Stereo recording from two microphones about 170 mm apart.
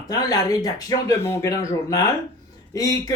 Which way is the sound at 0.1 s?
20° left (ahead or behind).